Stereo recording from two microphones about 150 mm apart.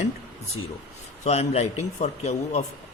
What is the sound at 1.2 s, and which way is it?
Speech, 45° left (ahead or behind).